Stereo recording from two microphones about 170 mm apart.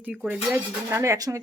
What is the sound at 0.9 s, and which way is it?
Speech, 15° right (ahead or behind).